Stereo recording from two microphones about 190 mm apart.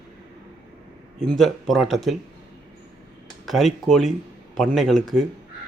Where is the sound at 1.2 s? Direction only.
Centre (ahead or behind).